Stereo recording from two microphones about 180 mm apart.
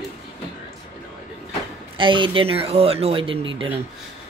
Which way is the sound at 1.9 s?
25° right (ahead or behind).